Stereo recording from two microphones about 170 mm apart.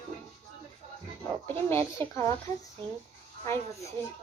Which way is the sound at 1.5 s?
15° left (ahead or behind).